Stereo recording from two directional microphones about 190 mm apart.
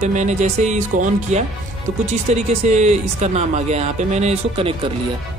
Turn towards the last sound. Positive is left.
turn(degrees=-30)  # may be behind; listen again after turning